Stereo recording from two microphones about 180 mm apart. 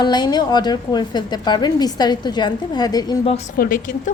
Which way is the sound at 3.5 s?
50° left (ahead or behind).